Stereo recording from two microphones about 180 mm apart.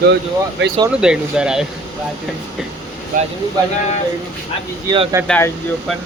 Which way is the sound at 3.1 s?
50° right (ahead or behind).